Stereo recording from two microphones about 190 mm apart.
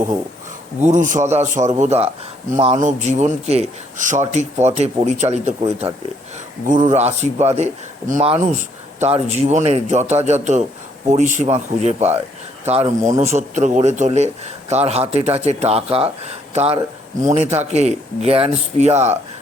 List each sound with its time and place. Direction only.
0.8 s speech: 40° right (ahead or behind)